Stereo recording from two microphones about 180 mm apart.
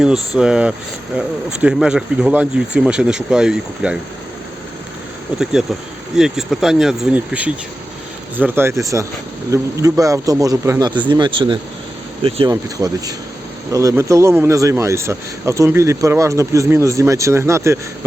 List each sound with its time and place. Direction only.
0.0 s speech: 5° right (ahead or behind)
5.4 s a man's voice: 5° right (ahead or behind); by 12.5 s 30° right (ahead or behind)
13.7 s speech: 15° right (ahead or behind)